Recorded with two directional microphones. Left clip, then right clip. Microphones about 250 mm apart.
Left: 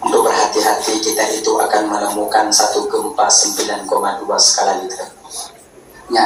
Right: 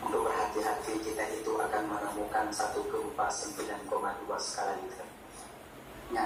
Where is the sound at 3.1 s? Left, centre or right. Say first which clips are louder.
Left 19 dB; left.